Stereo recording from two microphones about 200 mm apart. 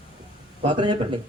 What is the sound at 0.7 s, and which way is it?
Speech, 25° right (ahead or behind).